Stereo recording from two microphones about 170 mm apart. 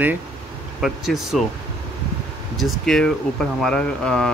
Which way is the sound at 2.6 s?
Centre (ahead or behind).